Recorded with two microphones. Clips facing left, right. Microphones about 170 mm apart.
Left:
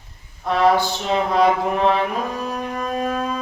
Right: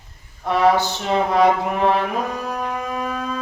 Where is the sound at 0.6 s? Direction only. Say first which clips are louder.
Even; 20° right (ahead or behind).